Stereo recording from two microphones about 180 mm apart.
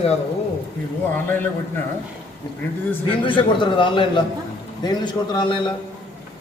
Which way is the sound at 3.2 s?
25° left (ahead or behind).